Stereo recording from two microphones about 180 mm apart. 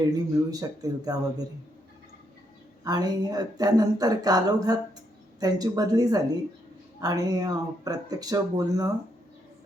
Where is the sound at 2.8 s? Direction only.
20° right (ahead or behind).